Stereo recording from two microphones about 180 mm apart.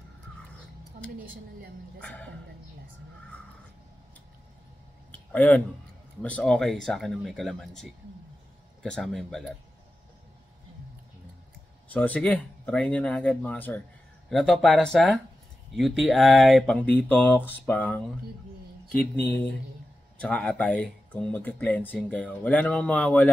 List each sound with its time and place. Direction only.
1.2 s a woman's voice: 50° right (ahead or behind)
2.0 s speech: 5° left (ahead or behind)
5.1 s a sound: 10° left (ahead or behind)
6.2 s speech: 5° left (ahead or behind)
11.9 s speech: 10° left (ahead or behind)
20.2 s speech: 5° left (ahead or behind)